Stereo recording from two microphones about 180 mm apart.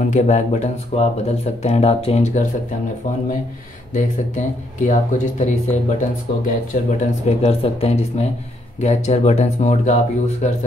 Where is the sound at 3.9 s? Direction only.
45° left (ahead or behind).